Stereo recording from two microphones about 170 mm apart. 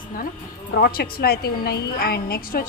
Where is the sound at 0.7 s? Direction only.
60° left (ahead or behind).